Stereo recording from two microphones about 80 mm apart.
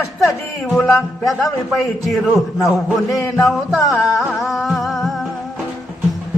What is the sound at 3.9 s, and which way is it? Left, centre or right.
Speech, centre.